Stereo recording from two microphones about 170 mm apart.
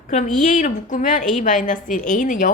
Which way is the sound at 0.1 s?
45° left (ahead or behind).